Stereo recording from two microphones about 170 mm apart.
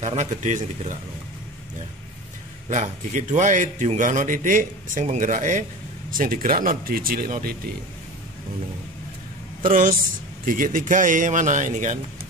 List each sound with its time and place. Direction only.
0.0 s speech: 40° right (ahead or behind)
2.7 s speech: 45° right (ahead or behind)
9.6 s speech: 55° right (ahead or behind)